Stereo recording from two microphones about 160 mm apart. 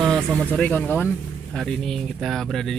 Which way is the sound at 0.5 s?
10° left (ahead or behind).